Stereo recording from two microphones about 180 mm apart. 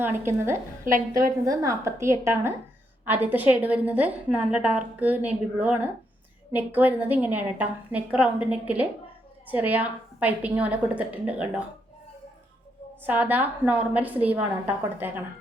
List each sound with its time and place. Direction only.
0.2 s a woman's voice: 15° right (ahead or behind)
13.1 s a woman's voice: 10° right (ahead or behind)